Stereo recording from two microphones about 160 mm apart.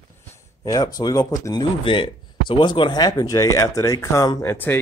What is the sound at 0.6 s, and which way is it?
Speech, 20° left (ahead or behind).